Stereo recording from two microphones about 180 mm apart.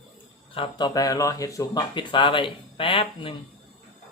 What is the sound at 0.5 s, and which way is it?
Speech, 25° left (ahead or behind).